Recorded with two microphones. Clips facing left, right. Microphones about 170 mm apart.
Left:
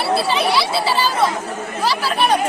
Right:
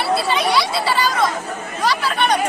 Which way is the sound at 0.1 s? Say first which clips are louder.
Left 1 dB; 30° left (ahead or behind).